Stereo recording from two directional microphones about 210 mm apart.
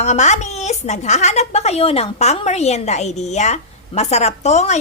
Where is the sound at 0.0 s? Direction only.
35° left (ahead or behind).